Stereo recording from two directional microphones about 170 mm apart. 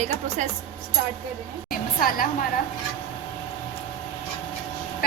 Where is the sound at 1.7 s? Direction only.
55° left (ahead or behind).